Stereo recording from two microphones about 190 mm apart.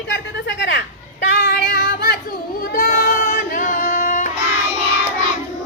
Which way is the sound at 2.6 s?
50° left (ahead or behind).